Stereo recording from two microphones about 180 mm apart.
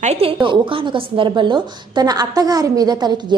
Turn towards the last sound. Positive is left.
turn(degrees=-25)  # may be behind; listen again after turning